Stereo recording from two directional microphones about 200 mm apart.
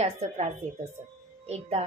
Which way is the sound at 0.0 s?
30° right (ahead or behind).